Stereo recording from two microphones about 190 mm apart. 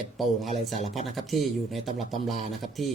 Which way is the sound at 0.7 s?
40° left (ahead or behind).